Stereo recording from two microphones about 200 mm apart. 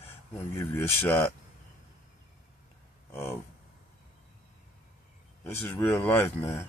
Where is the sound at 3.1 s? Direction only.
10° left (ahead or behind).